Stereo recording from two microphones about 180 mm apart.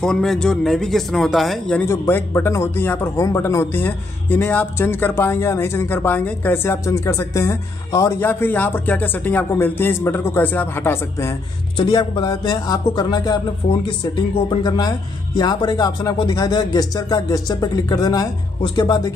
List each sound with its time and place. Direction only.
0.0 s speech: 5° left (ahead or behind)
11.7 s speech: 25° left (ahead or behind)